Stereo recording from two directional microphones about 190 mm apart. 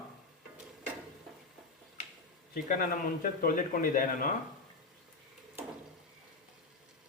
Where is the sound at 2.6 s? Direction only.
45° left (ahead or behind).